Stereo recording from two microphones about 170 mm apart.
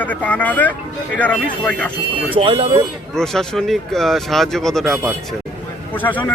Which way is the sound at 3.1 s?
Centre (ahead or behind).